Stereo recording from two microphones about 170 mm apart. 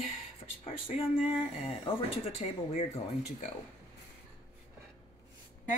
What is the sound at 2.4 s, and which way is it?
Speech, 40° left (ahead or behind).